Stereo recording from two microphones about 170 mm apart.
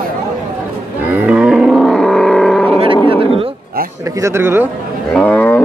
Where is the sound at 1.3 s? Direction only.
5° right (ahead or behind).